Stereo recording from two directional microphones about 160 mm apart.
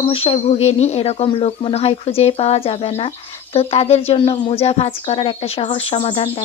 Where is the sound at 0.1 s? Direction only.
35° left (ahead or behind).